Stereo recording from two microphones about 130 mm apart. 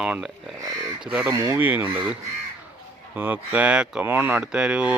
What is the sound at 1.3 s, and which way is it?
Speech, 25° right (ahead or behind).